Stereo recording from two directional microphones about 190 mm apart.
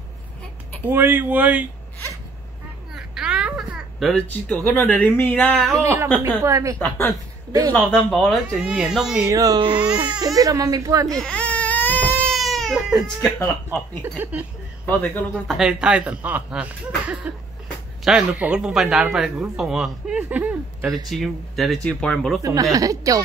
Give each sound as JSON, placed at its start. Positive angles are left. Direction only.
{"t": 0.8, "sound": "speech", "side_deg": -10}
{"t": 2.9, "sound": "a child's voice", "side_deg": -5}
{"t": 6.1, "sound": "speech", "side_deg": -15}
{"t": 6.8, "sound": "a man's voice", "side_deg": 10}
{"t": 9.3, "sound": "speech", "side_deg": -20}
{"t": 11.1, "sound": "baby cry", "side_deg": 5}
{"t": 14.0, "sound": "speech", "side_deg": -10}
{"t": 14.9, "sound": "a man's voice", "side_deg": 10}
{"t": 15.5, "sound": "a man's voice", "side_deg": -5}
{"t": 22.4, "sound": "speech", "side_deg": -15}